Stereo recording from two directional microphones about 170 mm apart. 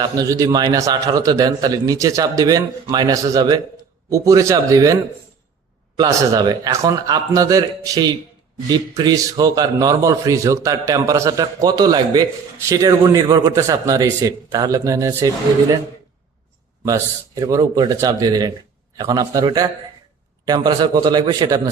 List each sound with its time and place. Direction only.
0.0 s a man's voice: 20° right (ahead or behind)
6.0 s a man's voice: 20° right (ahead or behind)
17.4 s a man's voice: 25° right (ahead or behind)